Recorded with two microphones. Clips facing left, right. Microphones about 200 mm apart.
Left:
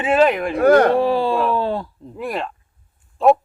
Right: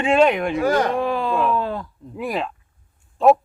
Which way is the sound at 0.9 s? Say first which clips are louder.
Left 4 dB; 30° left (ahead or behind).